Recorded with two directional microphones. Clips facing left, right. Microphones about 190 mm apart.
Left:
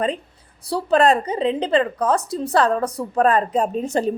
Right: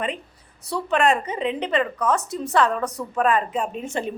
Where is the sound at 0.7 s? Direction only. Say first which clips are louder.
Left 4 dB; 35° left (ahead or behind).